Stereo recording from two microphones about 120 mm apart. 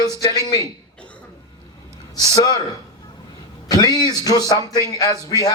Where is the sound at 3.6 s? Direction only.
30° left (ahead or behind).